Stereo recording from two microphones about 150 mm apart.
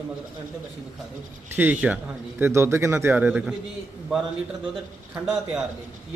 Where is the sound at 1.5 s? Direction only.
10° right (ahead or behind).